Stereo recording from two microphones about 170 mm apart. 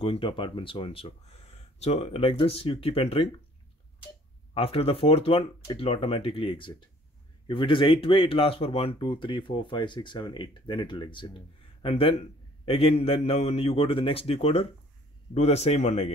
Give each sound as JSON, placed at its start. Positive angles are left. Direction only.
{"t": 0.0, "sound": "speech", "side_deg": 30}
{"t": 4.6, "sound": "speech", "side_deg": 35}